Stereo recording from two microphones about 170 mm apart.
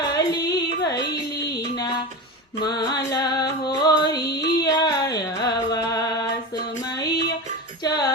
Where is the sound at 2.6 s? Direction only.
25° left (ahead or behind).